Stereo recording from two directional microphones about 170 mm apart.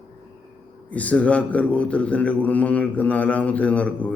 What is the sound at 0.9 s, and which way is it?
A man's voice, 10° left (ahead or behind).